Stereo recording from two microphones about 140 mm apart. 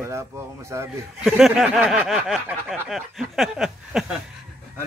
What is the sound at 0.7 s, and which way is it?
Speech, 20° right (ahead or behind).